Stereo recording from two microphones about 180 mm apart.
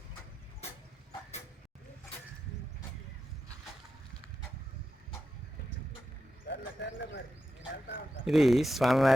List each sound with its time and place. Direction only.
6.5 s bird: 80° left
8.2 s speech: centre (ahead or behind)